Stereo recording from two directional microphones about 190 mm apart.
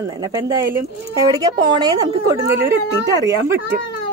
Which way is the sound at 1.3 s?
20° right (ahead or behind).